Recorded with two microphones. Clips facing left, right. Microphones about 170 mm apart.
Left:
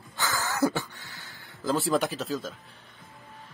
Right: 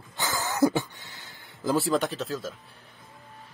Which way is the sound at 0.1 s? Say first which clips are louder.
Right 1 dB; 20° right (ahead or behind).